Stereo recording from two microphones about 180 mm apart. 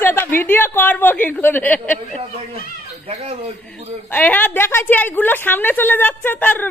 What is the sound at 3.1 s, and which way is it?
Speech, 35° right (ahead or behind).